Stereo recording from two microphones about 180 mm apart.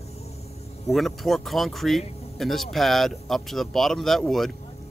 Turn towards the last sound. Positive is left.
turn(degrees=0)  # may be behind; listen again after turning